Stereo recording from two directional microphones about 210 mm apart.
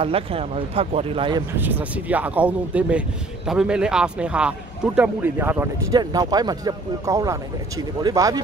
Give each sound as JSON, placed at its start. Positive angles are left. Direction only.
{"t": 0.0, "sound": "speech", "side_deg": -25}
{"t": 1.5, "sound": "a man's voice", "side_deg": -10}